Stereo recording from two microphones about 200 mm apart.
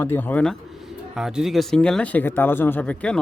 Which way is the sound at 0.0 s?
10° left (ahead or behind).